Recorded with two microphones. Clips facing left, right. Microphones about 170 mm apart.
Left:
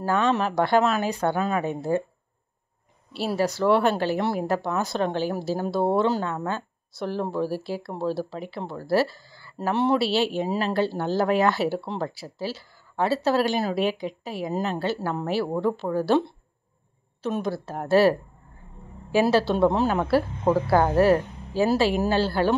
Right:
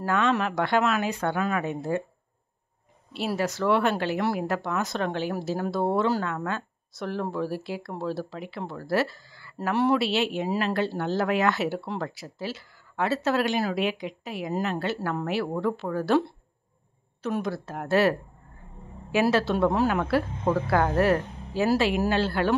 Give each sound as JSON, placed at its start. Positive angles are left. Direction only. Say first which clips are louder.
{"t": 0.0, "sound": "speech", "louder": "left 2 dB", "side_deg": 30}
{"t": 3.3, "sound": "speech", "louder": "left 3 dB", "side_deg": 35}
{"t": 15.0, "sound": "speech", "louder": "left 1 dB", "side_deg": 20}
{"t": 15.2, "sound": "speech", "louder": "left 3 dB", "side_deg": 30}
{"t": 19.1, "sound": "speech", "louder": "left 2 dB", "side_deg": 30}